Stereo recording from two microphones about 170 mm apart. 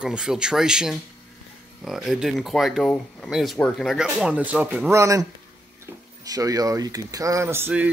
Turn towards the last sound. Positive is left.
turn(degrees=-15)  # may be behind; listen again after turning